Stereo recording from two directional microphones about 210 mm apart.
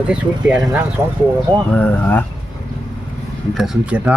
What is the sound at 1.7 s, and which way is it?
Speech, 10° left (ahead or behind).